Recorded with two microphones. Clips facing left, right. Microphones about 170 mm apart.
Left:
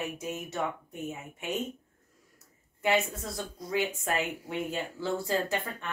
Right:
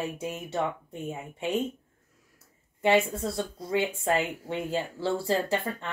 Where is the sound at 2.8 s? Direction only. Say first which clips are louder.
Right 5 dB; 30° right (ahead or behind).